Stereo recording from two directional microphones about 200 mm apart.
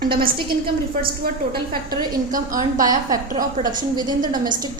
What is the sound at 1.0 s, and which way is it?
A woman's voice, 45° right (ahead or behind).